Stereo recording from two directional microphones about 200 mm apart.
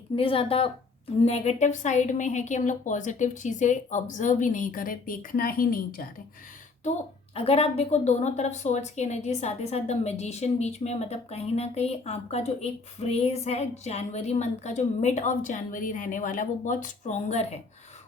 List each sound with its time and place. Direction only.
0.2 s a woman's voice: 30° left (ahead or behind); by 6.1 s 45° left (ahead or behind)
7.3 s a woman's voice: 30° left (ahead or behind)